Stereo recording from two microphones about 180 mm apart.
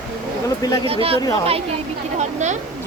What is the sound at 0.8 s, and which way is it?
Speech, 30° right (ahead or behind).